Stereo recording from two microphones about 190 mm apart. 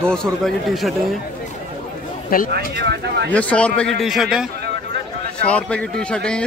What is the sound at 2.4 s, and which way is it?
Speech, 60° right (ahead or behind).